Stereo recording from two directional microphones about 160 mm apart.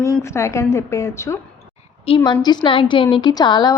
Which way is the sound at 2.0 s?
30° left (ahead or behind).